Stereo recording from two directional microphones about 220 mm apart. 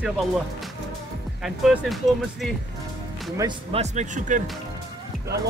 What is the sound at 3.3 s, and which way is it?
Speech, 25° right (ahead or behind).